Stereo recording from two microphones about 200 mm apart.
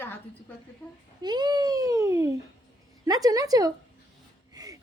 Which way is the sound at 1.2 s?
20° right (ahead or behind).